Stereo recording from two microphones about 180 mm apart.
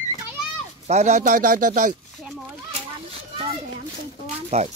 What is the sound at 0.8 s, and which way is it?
A man's voice, 40° right (ahead or behind).